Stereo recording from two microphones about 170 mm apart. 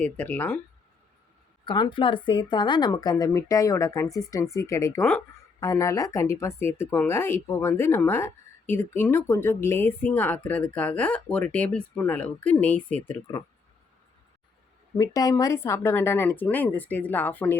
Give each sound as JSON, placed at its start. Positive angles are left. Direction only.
{"t": 0.0, "sound": "speech", "side_deg": 10}
{"t": 1.6, "sound": "a woman's voice", "side_deg": 25}
{"t": 14.9, "sound": "speech", "side_deg": 20}